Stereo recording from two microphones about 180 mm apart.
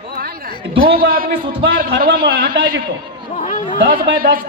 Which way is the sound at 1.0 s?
55° right (ahead or behind).